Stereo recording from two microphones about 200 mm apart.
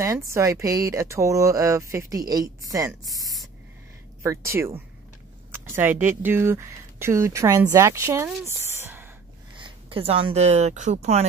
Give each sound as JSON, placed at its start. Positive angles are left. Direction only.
{"t": 0.0, "sound": "speech", "side_deg": -15}
{"t": 4.6, "sound": "speech", "side_deg": -15}
{"t": 8.5, "sound": "a sound", "side_deg": -10}
{"t": 9.6, "sound": "speech", "side_deg": -25}